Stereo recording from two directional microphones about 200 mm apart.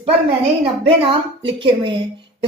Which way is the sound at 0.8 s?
25° right (ahead or behind).